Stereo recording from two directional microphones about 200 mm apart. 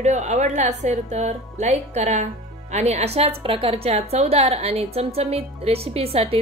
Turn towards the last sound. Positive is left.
turn(degrees=-30)  # may be behind; listen again after turning